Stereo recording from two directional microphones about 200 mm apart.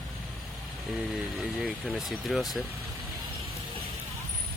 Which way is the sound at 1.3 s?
Centre (ahead or behind).